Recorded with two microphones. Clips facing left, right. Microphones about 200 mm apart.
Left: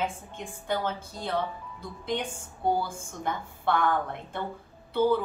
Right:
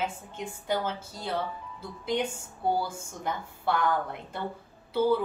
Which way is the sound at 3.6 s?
10° right (ahead or behind).